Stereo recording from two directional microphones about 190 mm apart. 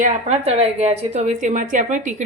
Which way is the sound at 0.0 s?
40° right (ahead or behind).